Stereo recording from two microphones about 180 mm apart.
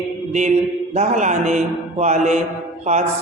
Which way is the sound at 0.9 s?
40° right (ahead or behind).